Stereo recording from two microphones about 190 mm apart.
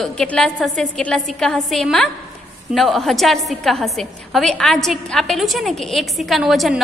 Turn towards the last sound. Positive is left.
turn(degrees=0)  # may be behind; listen again after turning